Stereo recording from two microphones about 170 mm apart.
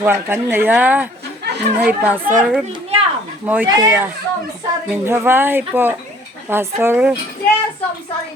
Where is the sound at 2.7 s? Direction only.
35° right (ahead or behind).